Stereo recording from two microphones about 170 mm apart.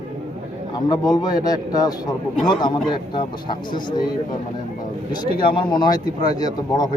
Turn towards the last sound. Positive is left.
turn(degrees=25)  # may be behind; listen again after turning